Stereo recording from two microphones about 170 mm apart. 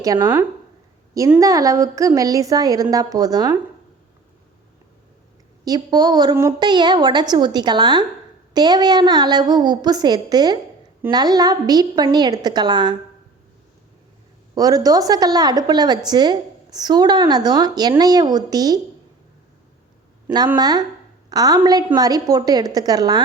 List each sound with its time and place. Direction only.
0.0 s speech: 20° right (ahead or behind)
1.4 s a woman's voice: 20° right (ahead or behind)
5.6 s a woman's voice: 25° right (ahead or behind)
14.5 s a woman's voice: 20° right (ahead or behind)
20.6 s a woman's voice: 25° right (ahead or behind)